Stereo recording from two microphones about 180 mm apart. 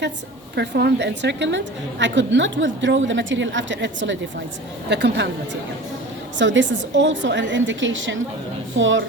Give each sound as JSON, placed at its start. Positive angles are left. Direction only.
{"t": 0.5, "sound": "a woman's voice", "side_deg": -70}
{"t": 4.9, "sound": "a woman's voice", "side_deg": -70}
{"t": 6.4, "sound": "a woman's voice", "side_deg": -90}